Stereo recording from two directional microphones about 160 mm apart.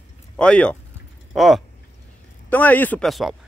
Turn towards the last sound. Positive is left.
turn(degrees=0)  # may be behind; listen again after turning